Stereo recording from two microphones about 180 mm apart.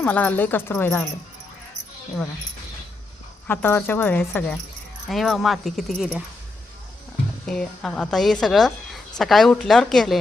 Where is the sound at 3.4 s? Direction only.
10° left (ahead or behind).